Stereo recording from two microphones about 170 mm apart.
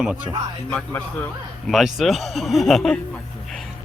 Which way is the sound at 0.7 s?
5° left (ahead or behind).